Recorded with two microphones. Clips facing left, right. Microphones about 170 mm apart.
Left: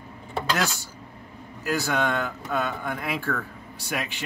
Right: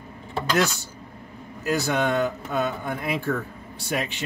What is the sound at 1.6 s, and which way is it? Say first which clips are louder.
Speech: right 2 dB; 20° right (ahead or behind).